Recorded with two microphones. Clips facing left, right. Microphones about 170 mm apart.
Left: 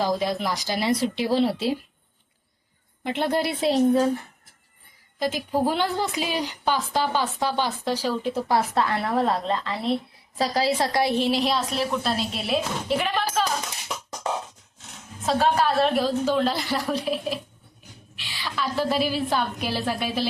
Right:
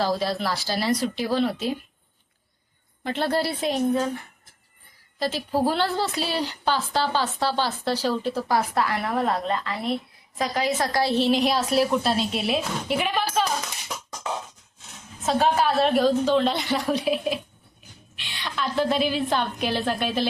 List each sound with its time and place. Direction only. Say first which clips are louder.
0.0 s speech: even; 15° left (ahead or behind)
3.0 s speech: even; 20° left (ahead or behind)
3.6 s a woman's voice: left 7 dB; 35° left (ahead or behind)
5.6 s a woman's voice: right 1 dB; 15° left (ahead or behind)
9.2 s a woman's voice: left 1 dB; centre (ahead or behind)
9.5 s speech: left 1 dB; 25° left (ahead or behind)
11.2 s a woman's voice: right 2 dB; 5° left (ahead or behind)
15.3 s a woman's voice: even; centre (ahead or behind)